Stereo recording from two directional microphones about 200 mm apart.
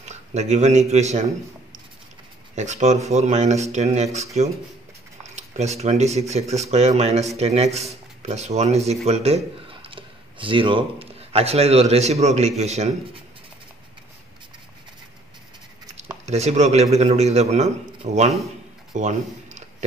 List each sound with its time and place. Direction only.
0.0 s a man's voice: 35° right (ahead or behind)
2.5 s a man's voice: 35° right (ahead or behind)
16.3 s a man's voice: 35° right (ahead or behind)